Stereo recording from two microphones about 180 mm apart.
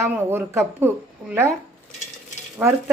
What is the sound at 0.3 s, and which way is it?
Speech, 10° right (ahead or behind).